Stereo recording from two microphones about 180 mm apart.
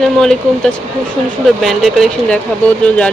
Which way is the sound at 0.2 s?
Centre (ahead or behind).